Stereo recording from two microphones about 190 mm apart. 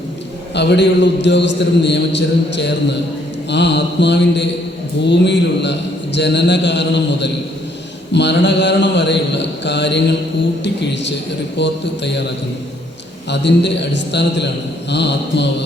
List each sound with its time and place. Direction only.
0.5 s a man's voice: 65° left (ahead or behind)
13.3 s a man's voice: 65° left (ahead or behind)